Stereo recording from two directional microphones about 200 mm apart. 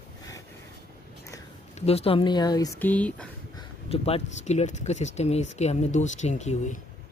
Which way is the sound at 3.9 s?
30° left (ahead or behind).